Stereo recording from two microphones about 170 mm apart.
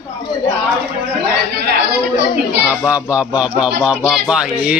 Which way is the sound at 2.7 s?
5° right (ahead or behind).